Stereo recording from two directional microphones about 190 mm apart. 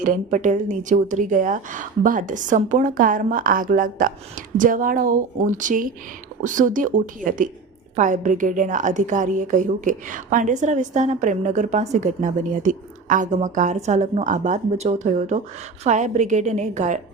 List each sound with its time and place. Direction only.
0.0 s a woman's voice: 45° right (ahead or behind)